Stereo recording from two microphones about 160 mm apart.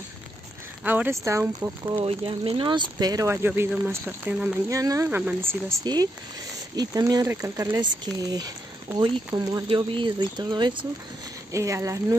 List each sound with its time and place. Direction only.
0.8 s speech: 10° right (ahead or behind)
2.0 s speech: 35° right (ahead or behind); by 4.6 s 5° right (ahead or behind)
4.6 s speech: 20° right (ahead or behind)